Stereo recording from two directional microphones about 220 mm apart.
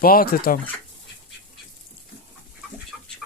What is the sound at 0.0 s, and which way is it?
Speech, 40° left (ahead or behind).